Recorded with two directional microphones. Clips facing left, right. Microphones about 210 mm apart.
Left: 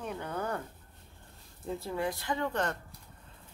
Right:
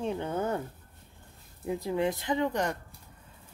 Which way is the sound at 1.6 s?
15° right (ahead or behind).